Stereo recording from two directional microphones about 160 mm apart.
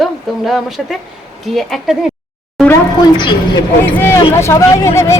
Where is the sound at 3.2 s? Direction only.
30° left (ahead or behind).